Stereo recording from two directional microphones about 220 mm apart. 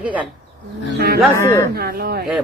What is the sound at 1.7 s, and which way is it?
Speech, 45° right (ahead or behind).